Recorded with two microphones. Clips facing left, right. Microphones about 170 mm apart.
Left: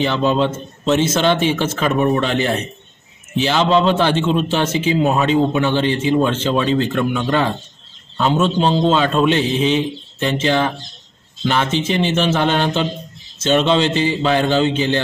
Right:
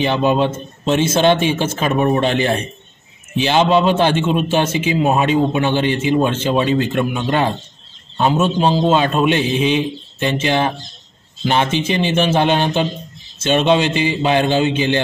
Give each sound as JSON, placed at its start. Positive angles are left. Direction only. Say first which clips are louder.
{"t": 0.0, "sound": "a man's voice", "louder": "right 1 dB", "side_deg": -15}